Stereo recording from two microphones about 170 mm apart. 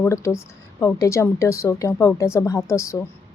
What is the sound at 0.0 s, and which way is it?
Speech, 15° left (ahead or behind).